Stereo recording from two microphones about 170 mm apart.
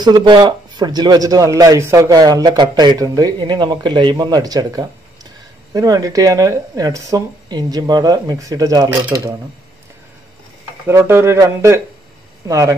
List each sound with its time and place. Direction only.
0.0 s a man's voice: 25° right (ahead or behind)
10.9 s a man's voice: 15° right (ahead or behind)